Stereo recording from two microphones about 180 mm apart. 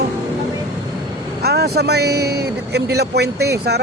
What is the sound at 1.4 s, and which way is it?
A man's voice, 65° right (ahead or behind).